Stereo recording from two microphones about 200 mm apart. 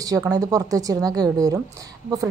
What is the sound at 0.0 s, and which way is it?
A woman's voice, 15° right (ahead or behind).